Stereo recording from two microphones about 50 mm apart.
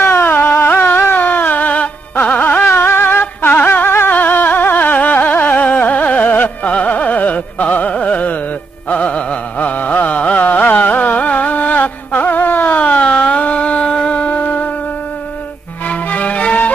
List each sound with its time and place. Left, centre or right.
0.0 s carnatic music: left
0.7 s music: left
2.6 s music: left
4.1 s music: left
8.9 s carnatic music: left
15.9 s music: left